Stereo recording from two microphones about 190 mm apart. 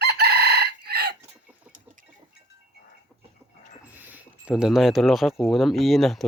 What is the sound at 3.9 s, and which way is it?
Speech, 10° right (ahead or behind).